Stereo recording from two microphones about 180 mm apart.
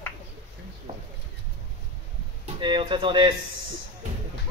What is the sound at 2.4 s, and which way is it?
Speech, 30° right (ahead or behind).